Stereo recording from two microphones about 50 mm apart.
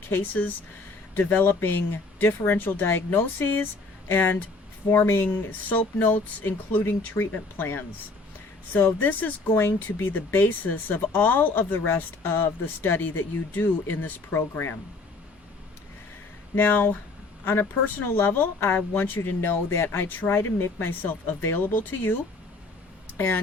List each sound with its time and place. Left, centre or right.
0.1 s speech: left
16.6 s speech: left
19.7 s speech: left
20.1 s speech: left
23.1 s speech: left